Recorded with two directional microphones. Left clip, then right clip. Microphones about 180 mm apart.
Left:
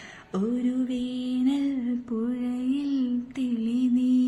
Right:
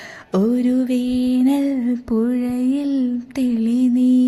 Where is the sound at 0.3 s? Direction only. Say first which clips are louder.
Right 10 dB; 45° right (ahead or behind).